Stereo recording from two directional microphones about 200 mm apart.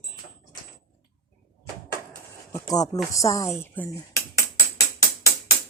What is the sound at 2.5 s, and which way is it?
Speech, 15° left (ahead or behind).